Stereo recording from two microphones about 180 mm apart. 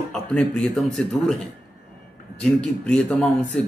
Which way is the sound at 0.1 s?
5° left (ahead or behind).